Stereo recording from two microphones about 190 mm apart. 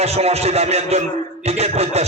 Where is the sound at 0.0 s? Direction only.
35° right (ahead or behind).